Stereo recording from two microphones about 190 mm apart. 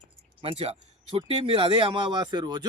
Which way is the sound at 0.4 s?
35° right (ahead or behind).